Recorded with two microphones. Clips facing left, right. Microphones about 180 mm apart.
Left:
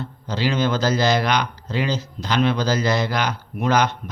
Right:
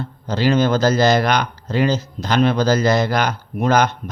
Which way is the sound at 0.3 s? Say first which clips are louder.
Right 5 dB; 45° right (ahead or behind).